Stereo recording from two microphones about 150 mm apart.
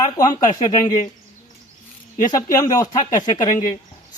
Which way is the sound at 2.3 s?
20° left (ahead or behind).